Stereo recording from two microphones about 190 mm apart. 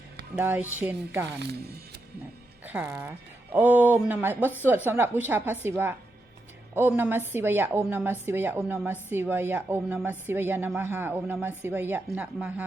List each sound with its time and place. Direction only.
0.3 s a woman's voice: 10° right (ahead or behind)
2.6 s a woman's voice: 10° right (ahead or behind)